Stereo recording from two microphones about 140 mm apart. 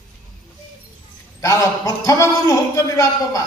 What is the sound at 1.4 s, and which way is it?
A man's voice, 25° left (ahead or behind).